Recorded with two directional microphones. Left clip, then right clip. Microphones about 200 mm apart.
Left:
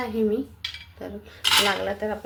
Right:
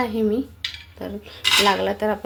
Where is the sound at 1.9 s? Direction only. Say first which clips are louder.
Right 5 dB; 30° right (ahead or behind).